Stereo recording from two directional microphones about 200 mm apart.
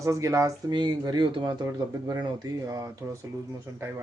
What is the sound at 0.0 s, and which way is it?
Speech, 15° right (ahead or behind).